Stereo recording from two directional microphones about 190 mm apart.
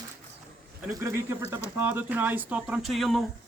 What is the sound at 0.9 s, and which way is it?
Speech, 15° right (ahead or behind).